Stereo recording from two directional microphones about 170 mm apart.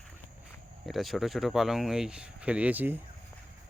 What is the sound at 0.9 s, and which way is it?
Speech, centre (ahead or behind).